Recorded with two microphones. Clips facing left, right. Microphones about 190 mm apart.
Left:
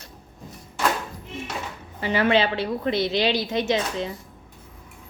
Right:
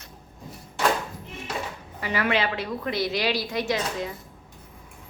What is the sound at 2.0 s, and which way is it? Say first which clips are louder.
Speech: left 5 dB; 30° left (ahead or behind).